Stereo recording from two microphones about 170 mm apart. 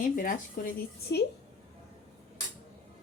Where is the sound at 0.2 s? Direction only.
55° left (ahead or behind).